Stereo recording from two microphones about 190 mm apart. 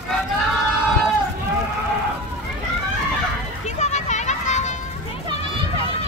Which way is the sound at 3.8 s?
35° left (ahead or behind).